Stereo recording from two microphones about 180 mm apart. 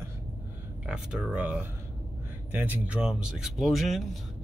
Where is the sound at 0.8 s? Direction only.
5° right (ahead or behind).